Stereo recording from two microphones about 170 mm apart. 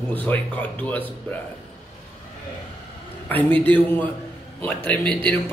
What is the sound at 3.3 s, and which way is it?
Speech, 10° left (ahead or behind).